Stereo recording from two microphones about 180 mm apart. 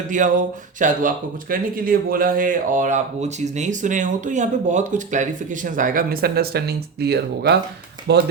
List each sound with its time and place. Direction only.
0.1 s speech: 45° right (ahead or behind); by 8.2 s 65° right (ahead or behind)